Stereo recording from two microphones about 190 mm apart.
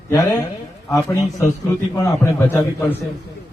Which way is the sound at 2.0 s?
15° left (ahead or behind).